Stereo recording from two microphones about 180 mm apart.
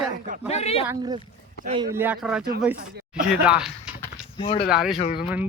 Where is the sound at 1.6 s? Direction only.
65° left (ahead or behind).